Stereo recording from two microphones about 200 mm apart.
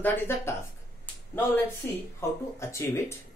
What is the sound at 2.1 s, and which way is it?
Speech, 15° left (ahead or behind).